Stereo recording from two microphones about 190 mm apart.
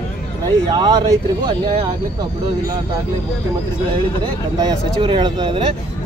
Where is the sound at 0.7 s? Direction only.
25° right (ahead or behind).